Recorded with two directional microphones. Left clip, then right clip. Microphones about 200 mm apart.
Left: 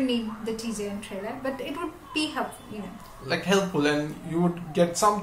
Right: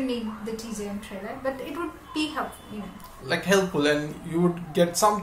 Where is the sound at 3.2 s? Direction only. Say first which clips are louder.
Right 2 dB; 10° right (ahead or behind).